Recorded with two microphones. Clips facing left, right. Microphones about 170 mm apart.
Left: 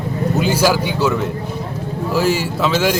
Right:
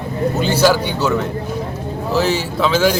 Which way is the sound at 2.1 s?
5° left (ahead or behind).